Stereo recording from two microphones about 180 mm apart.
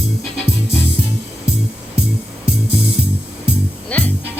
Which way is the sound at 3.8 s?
10° left (ahead or behind).